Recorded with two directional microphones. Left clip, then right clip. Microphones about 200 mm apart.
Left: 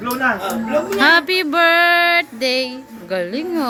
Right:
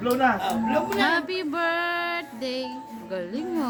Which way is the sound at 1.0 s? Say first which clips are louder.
Left 10 dB; 30° left (ahead or behind).